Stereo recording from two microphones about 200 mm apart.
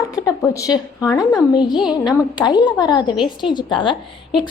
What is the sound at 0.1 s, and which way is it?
A woman's voice, 15° left (ahead or behind).